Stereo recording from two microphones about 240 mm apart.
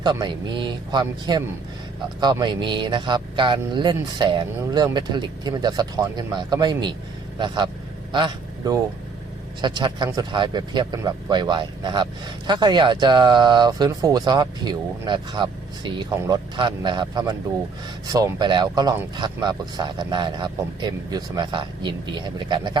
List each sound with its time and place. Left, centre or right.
0.0 s speech: centre